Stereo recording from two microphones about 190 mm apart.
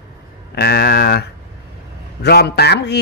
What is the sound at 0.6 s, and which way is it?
A man's voice, 55° left (ahead or behind).